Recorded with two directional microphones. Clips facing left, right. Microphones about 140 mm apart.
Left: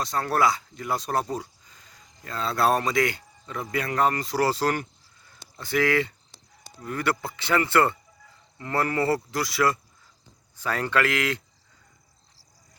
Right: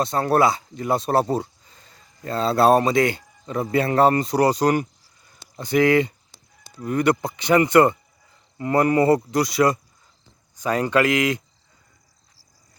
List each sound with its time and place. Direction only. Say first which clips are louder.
0.0 s speech: right 5 dB; 25° right (ahead or behind)